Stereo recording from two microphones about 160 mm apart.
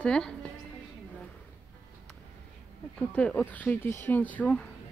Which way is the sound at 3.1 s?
10° left (ahead or behind).